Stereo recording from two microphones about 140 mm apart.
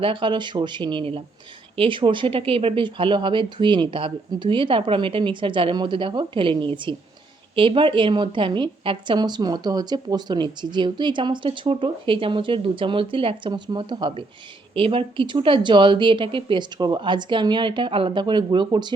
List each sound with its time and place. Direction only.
0.0 s a woman's voice: 35° right (ahead or behind)